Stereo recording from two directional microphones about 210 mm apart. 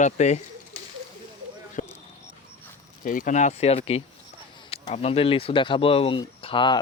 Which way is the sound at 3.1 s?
40° left (ahead or behind).